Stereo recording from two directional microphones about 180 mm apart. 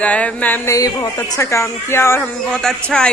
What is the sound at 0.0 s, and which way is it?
A man's voice, 5° left (ahead or behind).